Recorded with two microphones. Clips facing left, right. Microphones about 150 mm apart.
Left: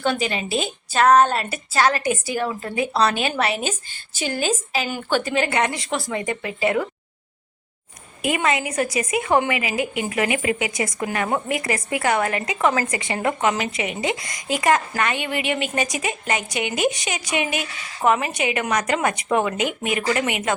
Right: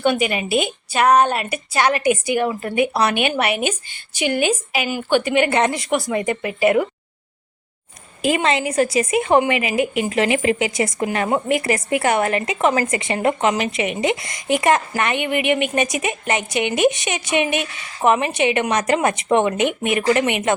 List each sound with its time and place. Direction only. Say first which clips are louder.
0.3 s a woman's voice: right 4 dB; 15° right (ahead or behind)
4.4 s a woman's voice: right 1 dB; 15° right (ahead or behind)
8.2 s speech: right 3 dB; 30° right (ahead or behind)